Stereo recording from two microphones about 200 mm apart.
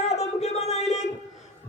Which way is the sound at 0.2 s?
35° left (ahead or behind).